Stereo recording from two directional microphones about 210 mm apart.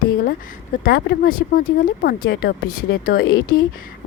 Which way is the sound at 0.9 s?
50° left (ahead or behind).